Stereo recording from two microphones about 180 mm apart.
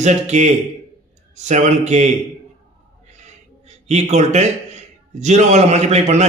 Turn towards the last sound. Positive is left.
turn(degrees=-40)  # may be behind; listen again after turning